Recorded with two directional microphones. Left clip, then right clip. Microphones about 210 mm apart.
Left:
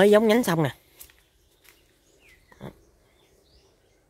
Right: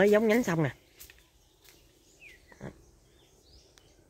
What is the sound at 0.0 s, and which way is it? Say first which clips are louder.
Speech: left 6 dB; 25° left (ahead or behind).